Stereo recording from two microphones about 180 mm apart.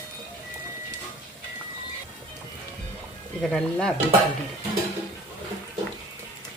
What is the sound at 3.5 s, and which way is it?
Stir, 5° left (ahead or behind).